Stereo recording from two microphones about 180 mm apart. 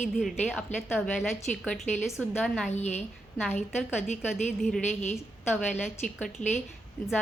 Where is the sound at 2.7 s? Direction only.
40° left (ahead or behind).